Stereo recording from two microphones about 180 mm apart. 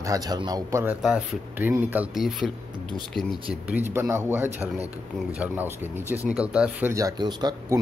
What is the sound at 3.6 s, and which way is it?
Speech, 10° right (ahead or behind).